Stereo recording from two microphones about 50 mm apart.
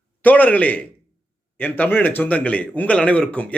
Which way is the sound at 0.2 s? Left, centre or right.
Left.